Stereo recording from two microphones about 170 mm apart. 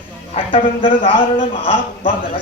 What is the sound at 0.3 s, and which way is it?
Speech, 35° left (ahead or behind).